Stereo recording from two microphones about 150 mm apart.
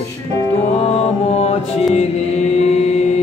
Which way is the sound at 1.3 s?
45° left (ahead or behind).